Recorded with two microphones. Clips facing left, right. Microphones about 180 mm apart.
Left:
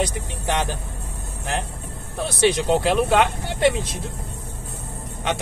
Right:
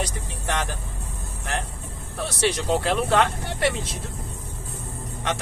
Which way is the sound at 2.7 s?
15° left (ahead or behind).